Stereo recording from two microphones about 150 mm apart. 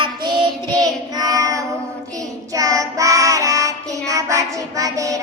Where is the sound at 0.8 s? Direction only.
25° right (ahead or behind).